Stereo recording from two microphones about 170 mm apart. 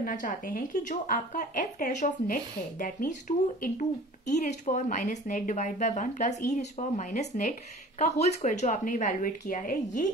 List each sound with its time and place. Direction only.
0.0 s speech: 50° left (ahead or behind)